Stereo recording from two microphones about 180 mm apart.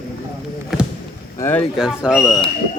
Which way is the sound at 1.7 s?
5° right (ahead or behind).